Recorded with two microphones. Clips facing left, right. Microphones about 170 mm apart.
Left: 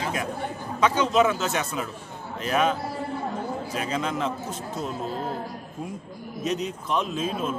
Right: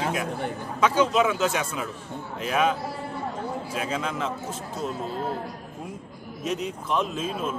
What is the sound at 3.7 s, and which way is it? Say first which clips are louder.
Speech: left 2 dB; 5° right (ahead or behind).